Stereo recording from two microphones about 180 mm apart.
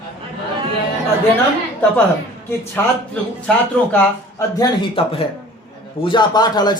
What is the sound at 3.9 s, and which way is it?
Speech, 15° left (ahead or behind).